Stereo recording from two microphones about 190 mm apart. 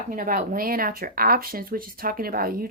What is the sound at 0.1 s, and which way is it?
A woman's voice, 45° right (ahead or behind).